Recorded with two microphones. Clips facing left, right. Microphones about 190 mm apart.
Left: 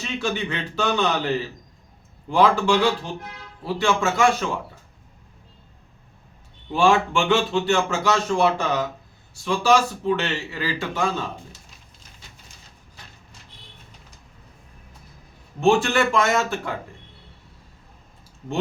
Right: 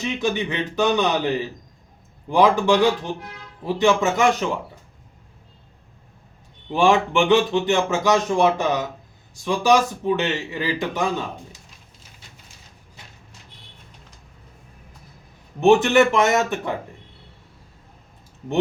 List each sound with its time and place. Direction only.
0.0 s a man's voice: 15° right (ahead or behind)
6.7 s a man's voice: 15° right (ahead or behind)
15.6 s speech: 20° right (ahead or behind)